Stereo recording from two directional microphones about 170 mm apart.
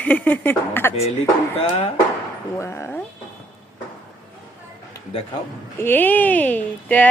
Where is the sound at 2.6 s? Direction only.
15° left (ahead or behind).